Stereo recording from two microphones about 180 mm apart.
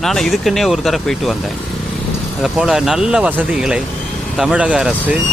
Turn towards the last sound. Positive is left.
turn(degrees=-5)  # may be behind; listen again after turning